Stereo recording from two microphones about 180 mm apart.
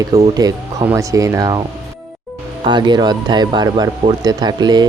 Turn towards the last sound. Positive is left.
turn(degrees=-25)  # may be behind; listen again after turning